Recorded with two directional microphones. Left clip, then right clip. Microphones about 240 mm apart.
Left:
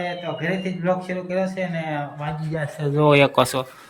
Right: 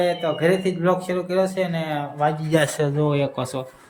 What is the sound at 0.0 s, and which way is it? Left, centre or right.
Speech, centre.